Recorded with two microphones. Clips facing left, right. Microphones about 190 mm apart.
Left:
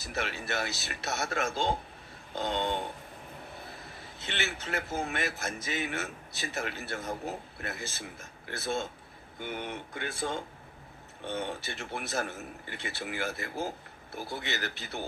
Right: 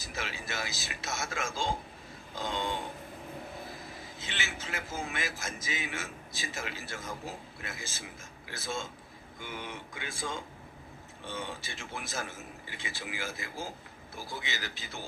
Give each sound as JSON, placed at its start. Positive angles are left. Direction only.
{"t": 0.0, "sound": "a man's voice", "side_deg": 65}
{"t": 4.0, "sound": "a man's voice", "side_deg": 60}